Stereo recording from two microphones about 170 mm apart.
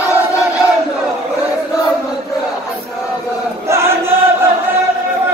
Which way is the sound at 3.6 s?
15° right (ahead or behind).